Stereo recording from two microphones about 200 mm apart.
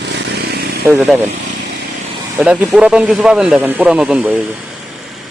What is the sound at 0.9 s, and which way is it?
Speech, 15° right (ahead or behind).